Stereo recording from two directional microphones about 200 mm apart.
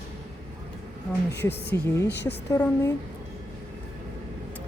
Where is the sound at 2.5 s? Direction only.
15° left (ahead or behind).